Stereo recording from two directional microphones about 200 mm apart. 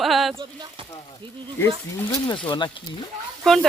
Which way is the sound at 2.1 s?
25° left (ahead or behind).